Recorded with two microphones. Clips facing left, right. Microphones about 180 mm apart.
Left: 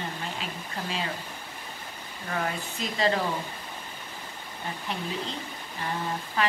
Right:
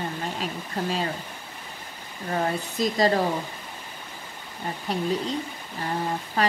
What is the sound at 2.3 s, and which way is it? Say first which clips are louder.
Speech: right 5 dB; 35° right (ahead or behind).